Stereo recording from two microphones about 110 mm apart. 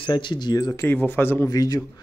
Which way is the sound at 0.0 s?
45° left (ahead or behind).